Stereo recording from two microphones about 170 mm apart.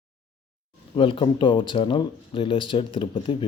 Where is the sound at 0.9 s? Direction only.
30° left (ahead or behind).